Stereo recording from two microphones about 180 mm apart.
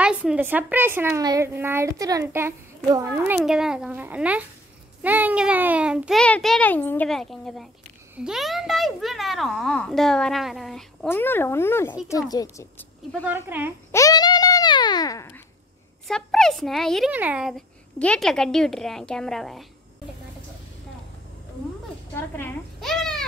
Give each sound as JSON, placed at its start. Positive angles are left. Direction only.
{"t": 0.0, "sound": "a child's voice", "side_deg": -5}
{"t": 11.1, "sound": "a woman's voice", "side_deg": 10}
{"t": 13.5, "sound": "a child's voice", "side_deg": -10}
{"t": 13.9, "sound": "babbling", "side_deg": 20}
{"t": 16.1, "sound": "a child's voice", "side_deg": 5}
{"t": 22.1, "sound": "a sound", "side_deg": 10}